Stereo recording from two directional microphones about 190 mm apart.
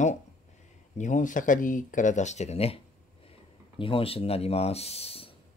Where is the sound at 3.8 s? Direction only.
30° left (ahead or behind).